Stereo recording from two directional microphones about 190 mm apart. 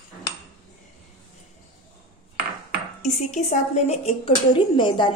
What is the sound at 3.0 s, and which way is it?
A woman's voice, 40° left (ahead or behind).